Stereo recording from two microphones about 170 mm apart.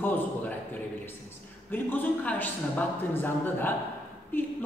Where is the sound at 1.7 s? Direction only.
10° left (ahead or behind).